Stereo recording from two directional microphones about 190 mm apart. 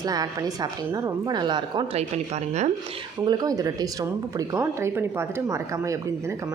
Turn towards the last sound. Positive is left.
turn(degrees=-15)  # may be behind; listen again after turning